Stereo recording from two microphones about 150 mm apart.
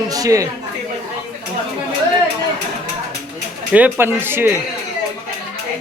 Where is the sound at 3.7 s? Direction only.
10° right (ahead or behind).